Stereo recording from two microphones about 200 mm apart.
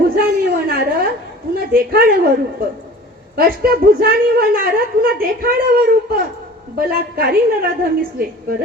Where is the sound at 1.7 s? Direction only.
45° right (ahead or behind).